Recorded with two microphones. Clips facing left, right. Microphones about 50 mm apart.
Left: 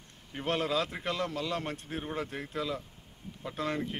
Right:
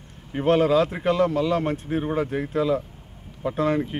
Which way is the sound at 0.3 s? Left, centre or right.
Centre.